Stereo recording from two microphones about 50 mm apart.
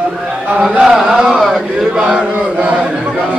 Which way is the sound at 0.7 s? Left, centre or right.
Centre.